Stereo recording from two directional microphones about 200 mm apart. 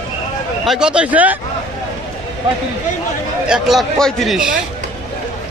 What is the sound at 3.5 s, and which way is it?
Speech, centre (ahead or behind).